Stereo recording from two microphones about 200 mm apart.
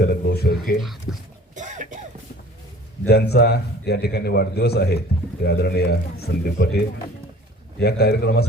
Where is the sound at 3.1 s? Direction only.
55° left (ahead or behind).